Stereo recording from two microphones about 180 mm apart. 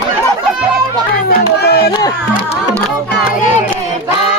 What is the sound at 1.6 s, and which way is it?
Music, 65° left (ahead or behind).